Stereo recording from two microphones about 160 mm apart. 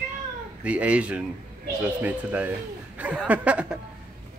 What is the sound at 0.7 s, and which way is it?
Speech, 10° right (ahead or behind).